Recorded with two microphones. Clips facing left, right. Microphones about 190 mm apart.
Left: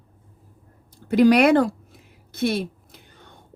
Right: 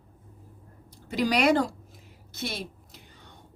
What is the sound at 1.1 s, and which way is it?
A woman's voice, 55° left (ahead or behind).